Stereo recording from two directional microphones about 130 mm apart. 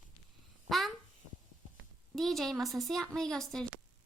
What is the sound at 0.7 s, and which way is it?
Speech, centre (ahead or behind).